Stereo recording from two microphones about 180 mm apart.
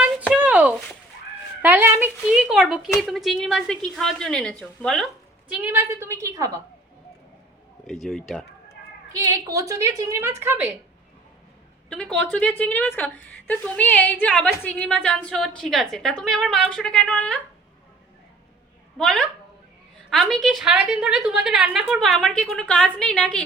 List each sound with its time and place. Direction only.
0.3 s a sound: 10° right (ahead or behind)
1.6 s a woman's voice: 10° right (ahead or behind)
5.5 s a woman's voice: 10° right (ahead or behind)
8.0 s a woman's voice: centre (ahead or behind)
9.1 s a woman's voice: 15° right (ahead or behind)
11.9 s a woman's voice: 5° left (ahead or behind)
18.9 s a woman's voice: 5° left (ahead or behind)